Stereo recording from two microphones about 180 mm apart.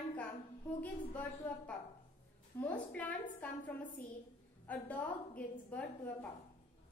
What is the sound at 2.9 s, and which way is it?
A woman's voice, 10° left (ahead or behind).